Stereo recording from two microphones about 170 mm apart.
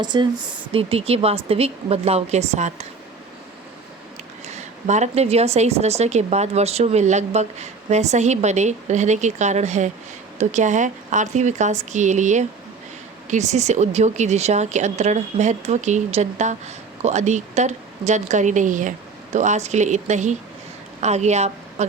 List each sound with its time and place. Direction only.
0.0 s a woman's voice: 25° right (ahead or behind); by 2.8 s 40° right (ahead or behind)
4.4 s a woman's voice: 40° right (ahead or behind)